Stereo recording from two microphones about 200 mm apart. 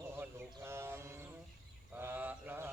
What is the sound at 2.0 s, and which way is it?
Fowl, 10° right (ahead or behind).